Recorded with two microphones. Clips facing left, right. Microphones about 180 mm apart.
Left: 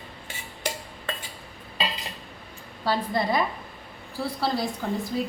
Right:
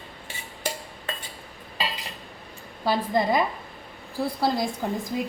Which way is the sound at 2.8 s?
15° right (ahead or behind).